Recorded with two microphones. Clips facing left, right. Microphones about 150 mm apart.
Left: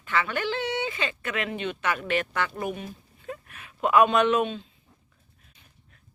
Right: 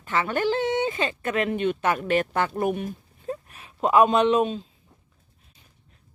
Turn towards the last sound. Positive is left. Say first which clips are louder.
# right 2 dB
turn(degrees=-35)  # may be behind; listen again after turning